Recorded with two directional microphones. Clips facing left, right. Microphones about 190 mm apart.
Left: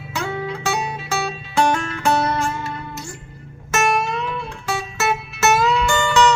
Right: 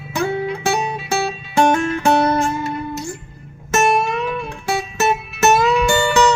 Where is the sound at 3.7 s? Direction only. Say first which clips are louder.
Right 3 dB; 15° right (ahead or behind).